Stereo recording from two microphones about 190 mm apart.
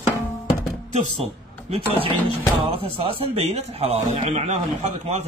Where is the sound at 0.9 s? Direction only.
30° right (ahead or behind).